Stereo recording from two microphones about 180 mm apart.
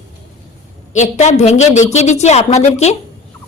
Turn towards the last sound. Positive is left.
turn(degrees=40)  # may be behind; listen again after turning